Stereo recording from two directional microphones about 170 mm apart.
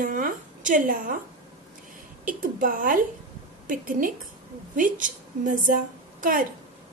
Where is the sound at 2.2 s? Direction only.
50° right (ahead or behind).